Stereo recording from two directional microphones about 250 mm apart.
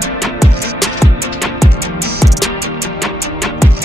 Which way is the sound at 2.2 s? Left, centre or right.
Centre.